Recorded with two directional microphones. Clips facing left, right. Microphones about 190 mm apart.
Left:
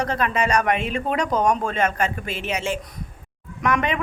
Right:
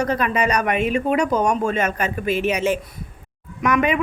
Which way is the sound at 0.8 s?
10° right (ahead or behind).